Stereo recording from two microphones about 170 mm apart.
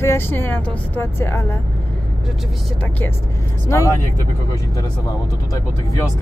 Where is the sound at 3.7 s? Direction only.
20° left (ahead or behind).